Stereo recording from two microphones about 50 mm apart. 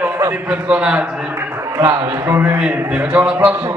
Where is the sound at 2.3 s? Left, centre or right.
Right.